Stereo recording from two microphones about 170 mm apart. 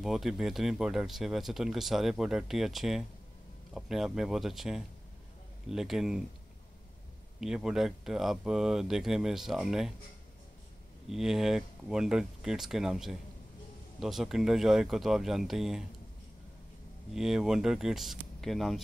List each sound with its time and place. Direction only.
0.0 s speech: centre (ahead or behind)
7.3 s speech: 5° right (ahead or behind)
11.1 s speech: centre (ahead or behind)
17.1 s speech: 5° right (ahead or behind)